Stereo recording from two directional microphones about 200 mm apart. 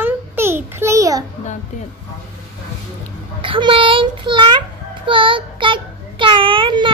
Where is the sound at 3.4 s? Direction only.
25° right (ahead or behind).